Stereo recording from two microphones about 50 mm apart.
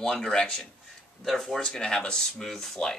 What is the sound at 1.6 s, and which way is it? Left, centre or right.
Speech, centre.